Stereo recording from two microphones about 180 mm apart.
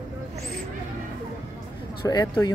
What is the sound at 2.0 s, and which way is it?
Speech, 20° left (ahead or behind).